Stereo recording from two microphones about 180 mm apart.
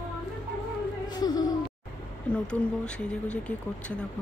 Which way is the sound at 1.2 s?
20° left (ahead or behind).